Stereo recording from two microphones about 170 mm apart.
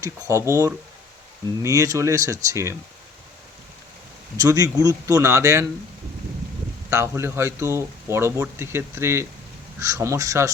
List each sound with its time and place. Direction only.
0.0 s speech: 15° right (ahead or behind)
4.4 s speech: 20° right (ahead or behind)
6.9 s speech: 15° right (ahead or behind)